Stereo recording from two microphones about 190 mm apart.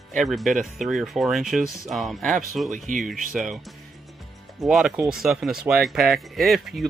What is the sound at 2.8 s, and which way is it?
Speech, 45° right (ahead or behind).